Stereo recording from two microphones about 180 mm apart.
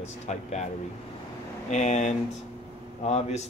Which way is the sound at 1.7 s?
40° left (ahead or behind).